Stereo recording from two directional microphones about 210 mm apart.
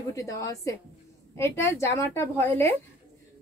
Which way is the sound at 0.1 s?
15° left (ahead or behind).